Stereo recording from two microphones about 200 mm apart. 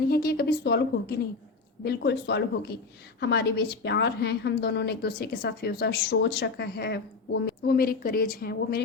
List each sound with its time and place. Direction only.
0.1 s a woman's voice: 50° left (ahead or behind)